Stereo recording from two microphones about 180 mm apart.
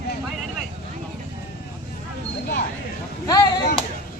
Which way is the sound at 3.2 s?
20° left (ahead or behind).